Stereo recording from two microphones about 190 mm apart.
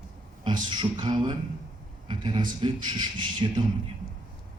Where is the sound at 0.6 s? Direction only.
25° right (ahead or behind).